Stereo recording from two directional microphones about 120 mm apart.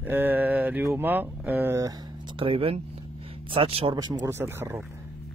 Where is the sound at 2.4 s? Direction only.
50° right (ahead or behind).